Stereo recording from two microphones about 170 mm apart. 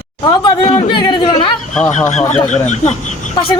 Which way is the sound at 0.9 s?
25° left (ahead or behind).